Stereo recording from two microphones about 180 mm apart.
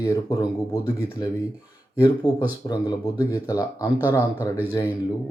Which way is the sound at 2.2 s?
20° left (ahead or behind).